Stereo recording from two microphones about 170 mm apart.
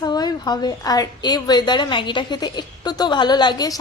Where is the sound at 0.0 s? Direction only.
25° left (ahead or behind).